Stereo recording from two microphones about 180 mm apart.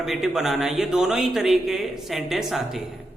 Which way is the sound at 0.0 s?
Centre (ahead or behind).